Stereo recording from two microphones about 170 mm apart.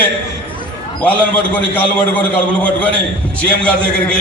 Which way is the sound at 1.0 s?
10° left (ahead or behind).